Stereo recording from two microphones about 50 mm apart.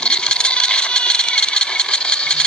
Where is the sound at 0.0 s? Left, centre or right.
Centre.